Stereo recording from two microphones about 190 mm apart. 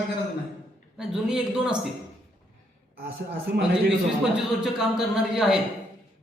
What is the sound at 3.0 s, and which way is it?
Speech, 55° right (ahead or behind).